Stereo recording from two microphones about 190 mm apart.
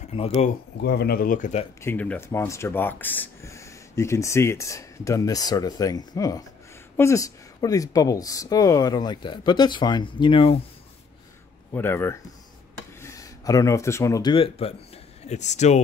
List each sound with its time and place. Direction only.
0.1 s speech: 35° left (ahead or behind)
0.7 s speech: 60° left (ahead or behind)
1.8 s speech: 10° left (ahead or behind); by 10.6 s 30° left (ahead or behind)
11.7 s speech: 10° left (ahead or behind); by 15.8 s 35° left (ahead or behind)